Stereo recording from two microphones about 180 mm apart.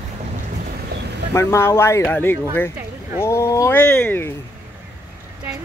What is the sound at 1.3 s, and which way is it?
Speech, 15° left (ahead or behind).